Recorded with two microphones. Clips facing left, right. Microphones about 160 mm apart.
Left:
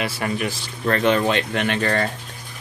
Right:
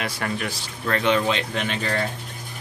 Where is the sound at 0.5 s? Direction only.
45° left (ahead or behind).